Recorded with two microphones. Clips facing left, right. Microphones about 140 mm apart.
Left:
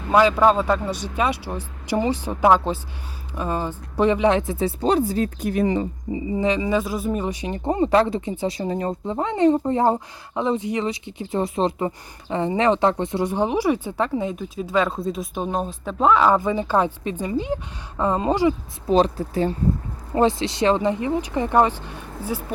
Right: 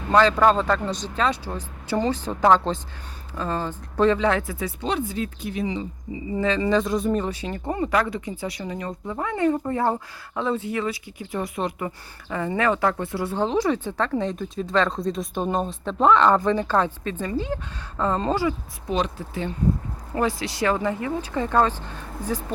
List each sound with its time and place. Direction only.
0.1 s speech: 10° left (ahead or behind)
4.8 s speech: 40° left (ahead or behind)
6.3 s speech: 15° left (ahead or behind)
7.6 s speech: 30° left (ahead or behind)
18.9 s speech: 35° left (ahead or behind)
20.1 s speech: 25° left (ahead or behind); by 22.5 s 10° left (ahead or behind)